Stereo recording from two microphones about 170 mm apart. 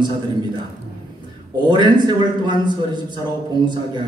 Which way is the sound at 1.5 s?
25° right (ahead or behind).